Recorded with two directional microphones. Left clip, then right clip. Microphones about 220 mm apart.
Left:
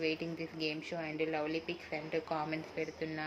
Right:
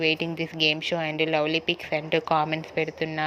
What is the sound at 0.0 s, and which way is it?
Speech, 30° right (ahead or behind).